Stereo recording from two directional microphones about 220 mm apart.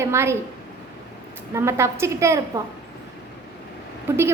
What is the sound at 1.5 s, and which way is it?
Speech, 10° right (ahead or behind).